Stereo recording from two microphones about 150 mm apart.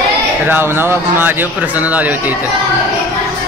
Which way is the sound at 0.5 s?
15° right (ahead or behind).